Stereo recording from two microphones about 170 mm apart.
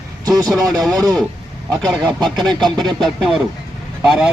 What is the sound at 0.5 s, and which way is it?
Speech, 20° right (ahead or behind).